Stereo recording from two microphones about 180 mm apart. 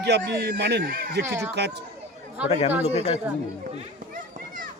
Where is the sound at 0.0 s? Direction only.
65° right (ahead or behind).